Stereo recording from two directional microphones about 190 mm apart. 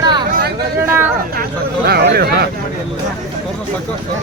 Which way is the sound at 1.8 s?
55° right (ahead or behind).